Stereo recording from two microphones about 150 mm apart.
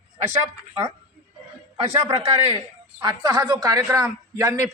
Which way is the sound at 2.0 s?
25° right (ahead or behind).